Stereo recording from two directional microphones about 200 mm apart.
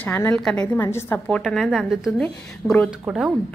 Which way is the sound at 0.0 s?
10° left (ahead or behind).